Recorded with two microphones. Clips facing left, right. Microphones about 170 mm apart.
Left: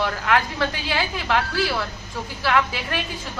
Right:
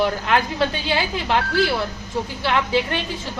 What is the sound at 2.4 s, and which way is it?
Speech, 25° right (ahead or behind).